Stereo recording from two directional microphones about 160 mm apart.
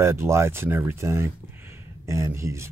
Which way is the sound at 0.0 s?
15° right (ahead or behind).